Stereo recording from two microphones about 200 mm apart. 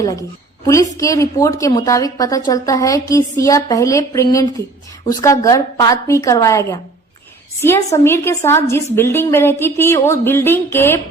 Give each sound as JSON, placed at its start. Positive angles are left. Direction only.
{"t": 0.0, "sound": "a woman's voice", "side_deg": 15}